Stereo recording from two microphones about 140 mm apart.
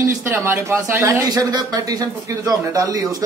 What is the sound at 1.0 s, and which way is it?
A man's voice, 25° right (ahead or behind).